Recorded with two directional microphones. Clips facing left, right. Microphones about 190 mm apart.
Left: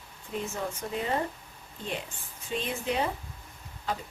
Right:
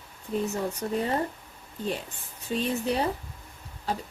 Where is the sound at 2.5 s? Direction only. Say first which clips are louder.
Right 4 dB; 40° right (ahead or behind).